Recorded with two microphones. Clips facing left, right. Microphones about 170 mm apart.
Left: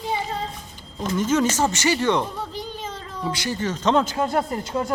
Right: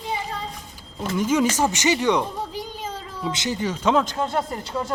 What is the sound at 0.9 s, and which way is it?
Speech, 10° right (ahead or behind).